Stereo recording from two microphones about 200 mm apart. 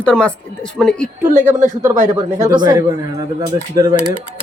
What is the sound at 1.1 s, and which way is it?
Speech, 40° right (ahead or behind).